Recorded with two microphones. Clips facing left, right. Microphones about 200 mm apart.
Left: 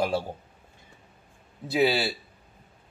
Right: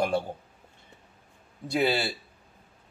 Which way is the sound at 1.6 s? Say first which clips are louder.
Left 2 dB; 5° left (ahead or behind).